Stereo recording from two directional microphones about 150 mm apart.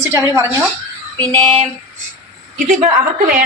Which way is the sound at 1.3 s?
30° right (ahead or behind).